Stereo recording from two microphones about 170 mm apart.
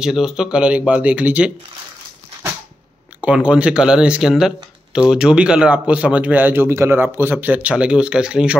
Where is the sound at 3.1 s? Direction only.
5° right (ahead or behind).